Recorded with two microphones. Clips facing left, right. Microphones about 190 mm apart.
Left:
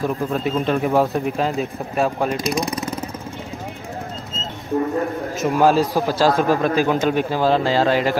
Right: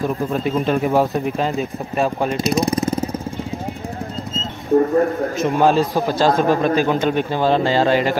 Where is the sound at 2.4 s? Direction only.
30° right (ahead or behind).